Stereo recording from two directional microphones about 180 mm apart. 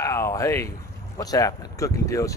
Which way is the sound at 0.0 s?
15° left (ahead or behind).